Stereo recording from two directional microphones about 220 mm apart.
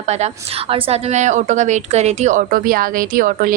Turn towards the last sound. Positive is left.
turn(degrees=-40)  # may be behind; listen again after turning